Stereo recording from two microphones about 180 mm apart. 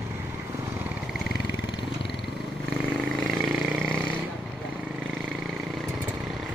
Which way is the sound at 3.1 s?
Centre (ahead or behind).